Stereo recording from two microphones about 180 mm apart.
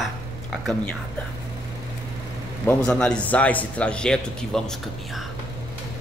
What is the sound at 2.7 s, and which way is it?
Speech, 5° left (ahead or behind).